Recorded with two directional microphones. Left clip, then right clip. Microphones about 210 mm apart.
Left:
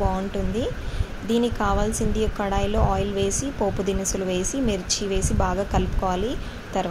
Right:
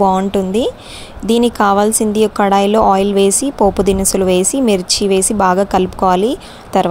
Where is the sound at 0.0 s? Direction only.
45° right (ahead or behind).